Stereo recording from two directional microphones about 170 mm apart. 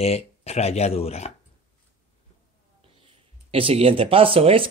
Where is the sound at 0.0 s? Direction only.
40° left (ahead or behind).